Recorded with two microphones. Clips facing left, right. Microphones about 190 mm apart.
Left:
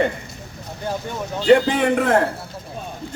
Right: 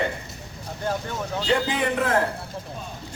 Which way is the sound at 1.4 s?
60° left (ahead or behind).